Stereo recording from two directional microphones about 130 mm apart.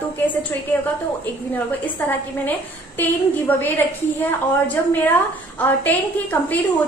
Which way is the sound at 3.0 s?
15° left (ahead or behind).